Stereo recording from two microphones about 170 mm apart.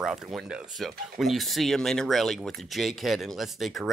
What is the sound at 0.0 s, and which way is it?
Speech, 5° right (ahead or behind).